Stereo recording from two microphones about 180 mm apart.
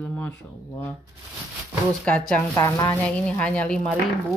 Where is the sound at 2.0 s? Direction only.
5° left (ahead or behind).